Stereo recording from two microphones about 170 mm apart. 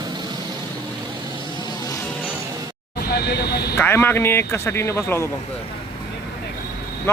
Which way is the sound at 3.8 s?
15° left (ahead or behind).